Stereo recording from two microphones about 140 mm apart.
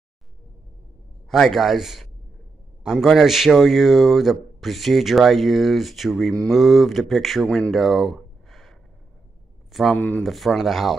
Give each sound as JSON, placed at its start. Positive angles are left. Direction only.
{"t": 1.3, "sound": "a man's voice", "side_deg": 0}
{"t": 9.7, "sound": "a sound", "side_deg": 0}
{"t": 9.9, "sound": "speech", "side_deg": 10}
{"t": 10.3, "sound": "a man's voice", "side_deg": 0}